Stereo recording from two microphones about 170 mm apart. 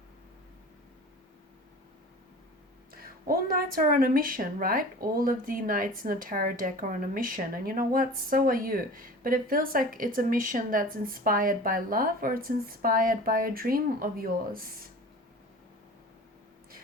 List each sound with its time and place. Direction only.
2.9 s a woman's voice: 60° right (ahead or behind)